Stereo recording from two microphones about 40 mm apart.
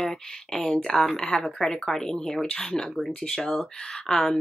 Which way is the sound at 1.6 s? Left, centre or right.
Centre.